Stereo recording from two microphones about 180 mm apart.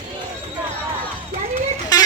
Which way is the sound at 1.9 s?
20° left (ahead or behind).